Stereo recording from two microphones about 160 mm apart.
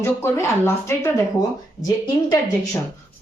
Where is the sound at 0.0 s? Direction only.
15° left (ahead or behind).